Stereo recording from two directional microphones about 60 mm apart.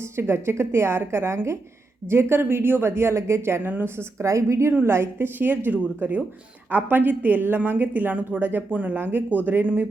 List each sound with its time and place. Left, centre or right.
0.2 s a woman's voice: right
4.8 s a woman's voice: right